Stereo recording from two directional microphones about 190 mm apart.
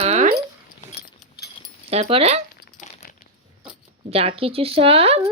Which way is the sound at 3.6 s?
30° right (ahead or behind).